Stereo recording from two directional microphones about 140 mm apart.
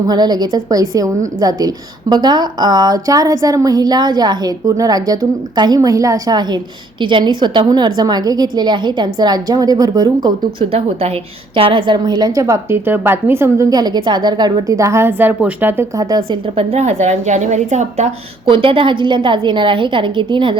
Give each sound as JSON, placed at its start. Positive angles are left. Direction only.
{"t": 0.1, "sound": "a woman's voice", "side_deg": -30}
{"t": 10.7, "sound": "a woman's voice", "side_deg": -50}
{"t": 16.0, "sound": "a woman's voice", "side_deg": -30}
{"t": 16.6, "sound": "a woman's voice", "side_deg": -50}
{"t": 18.4, "sound": "a woman's voice", "side_deg": -40}